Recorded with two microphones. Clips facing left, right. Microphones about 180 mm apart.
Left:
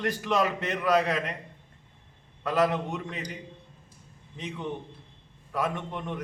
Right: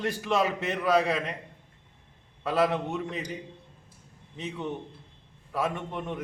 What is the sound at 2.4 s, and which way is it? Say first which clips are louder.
Speech: even; centre (ahead or behind).